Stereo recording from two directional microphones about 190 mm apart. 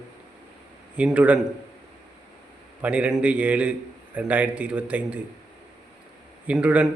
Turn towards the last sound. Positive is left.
turn(degrees=-5)  # may be behind; listen again after turning